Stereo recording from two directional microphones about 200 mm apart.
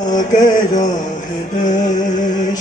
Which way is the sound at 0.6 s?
40° left (ahead or behind).